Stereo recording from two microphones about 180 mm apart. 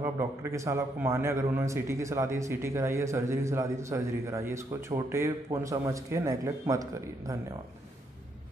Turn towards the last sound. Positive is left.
turn(degrees=-20)  # may be behind; listen again after turning